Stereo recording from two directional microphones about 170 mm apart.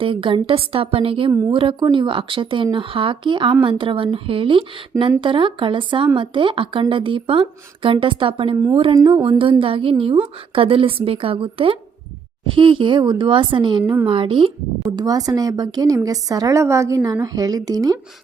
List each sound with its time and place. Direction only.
0.0 s a woman's voice: 30° right (ahead or behind)